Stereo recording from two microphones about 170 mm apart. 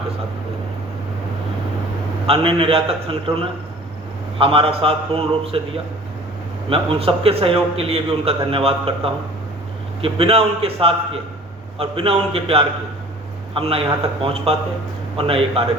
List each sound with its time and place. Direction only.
2.2 s a man's voice: 35° right (ahead or behind)
6.7 s a man's voice: 35° right (ahead or behind)